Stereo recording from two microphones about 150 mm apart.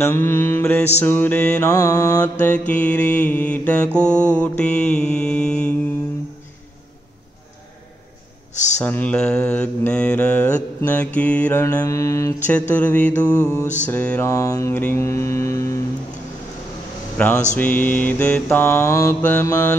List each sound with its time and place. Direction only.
0.0 s mantra: 15° left (ahead or behind)
1.6 s mantra: 25° left (ahead or behind)
2.4 s mantra: 10° left (ahead or behind)
8.8 s mantra: 10° left (ahead or behind)
17.2 s mantra: 5° left (ahead or behind)